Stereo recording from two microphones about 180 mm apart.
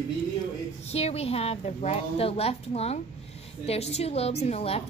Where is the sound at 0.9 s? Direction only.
35° left (ahead or behind).